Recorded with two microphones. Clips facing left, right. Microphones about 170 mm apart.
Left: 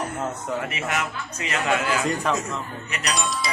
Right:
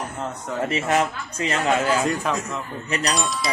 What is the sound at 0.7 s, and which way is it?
Speech, 30° right (ahead or behind).